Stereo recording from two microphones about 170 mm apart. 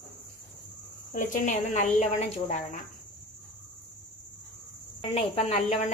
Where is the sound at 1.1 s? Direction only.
50° left (ahead or behind).